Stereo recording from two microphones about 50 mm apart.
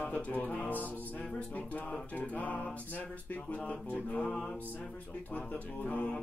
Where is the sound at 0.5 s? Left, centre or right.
Left.